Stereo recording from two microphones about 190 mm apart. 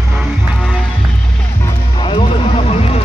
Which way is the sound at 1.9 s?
30° left (ahead or behind).